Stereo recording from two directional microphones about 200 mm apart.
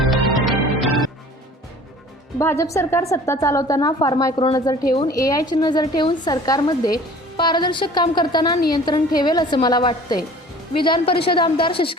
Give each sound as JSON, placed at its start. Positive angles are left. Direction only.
{"t": 0.0, "sound": "music", "side_deg": 0}
{"t": 2.4, "sound": "a woman's voice", "side_deg": 15}